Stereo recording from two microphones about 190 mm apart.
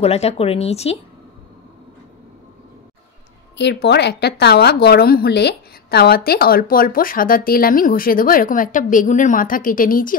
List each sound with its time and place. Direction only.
0.0 s speech: 35° left (ahead or behind)
3.5 s speech: 65° left (ahead or behind); by 10.1 s 45° left (ahead or behind)